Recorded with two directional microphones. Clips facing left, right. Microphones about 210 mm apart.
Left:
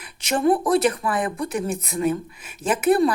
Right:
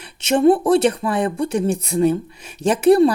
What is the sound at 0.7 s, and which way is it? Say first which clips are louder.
A woman's voice: right 4 dB; 25° right (ahead or behind).